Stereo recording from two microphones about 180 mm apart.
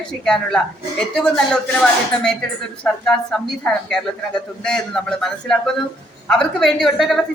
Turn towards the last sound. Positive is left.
turn(degrees=0)  # may be behind; listen again after turning